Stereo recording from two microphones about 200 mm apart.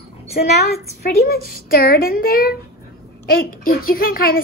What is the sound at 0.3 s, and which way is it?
A woman's voice, 50° left (ahead or behind).